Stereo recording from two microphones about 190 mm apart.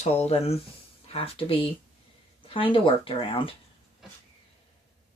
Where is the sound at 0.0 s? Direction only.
35° left (ahead or behind).